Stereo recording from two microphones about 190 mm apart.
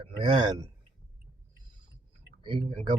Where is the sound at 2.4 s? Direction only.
30° right (ahead or behind).